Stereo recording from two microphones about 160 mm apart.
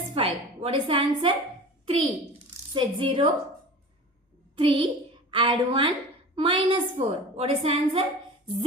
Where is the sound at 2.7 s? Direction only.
30° right (ahead or behind).